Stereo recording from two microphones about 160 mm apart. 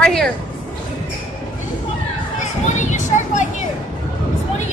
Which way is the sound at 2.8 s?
50° left (ahead or behind).